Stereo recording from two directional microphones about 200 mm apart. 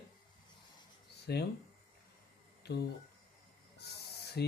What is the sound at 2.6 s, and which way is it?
Speech, 55° left (ahead or behind).